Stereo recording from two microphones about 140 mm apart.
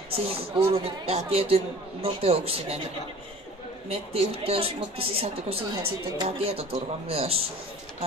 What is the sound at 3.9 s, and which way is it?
Speech, 45° right (ahead or behind).